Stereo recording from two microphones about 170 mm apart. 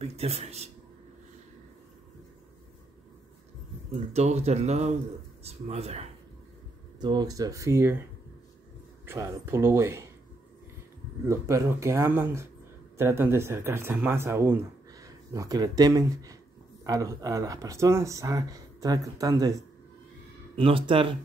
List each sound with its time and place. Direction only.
0.0 s a man's voice: 40° right (ahead or behind)
3.9 s speech: 40° right (ahead or behind)
7.0 s speech: 25° right (ahead or behind)
9.0 s speech: 15° right (ahead or behind)
11.2 s speech: 15° right (ahead or behind)
20.5 s speech: 30° right (ahead or behind)